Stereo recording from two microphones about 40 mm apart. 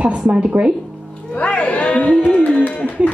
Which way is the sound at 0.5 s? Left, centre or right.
Right.